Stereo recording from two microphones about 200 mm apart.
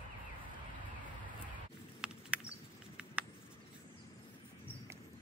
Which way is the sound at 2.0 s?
5° right (ahead or behind).